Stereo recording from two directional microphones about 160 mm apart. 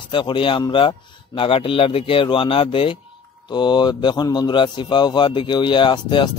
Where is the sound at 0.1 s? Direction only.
30° left (ahead or behind).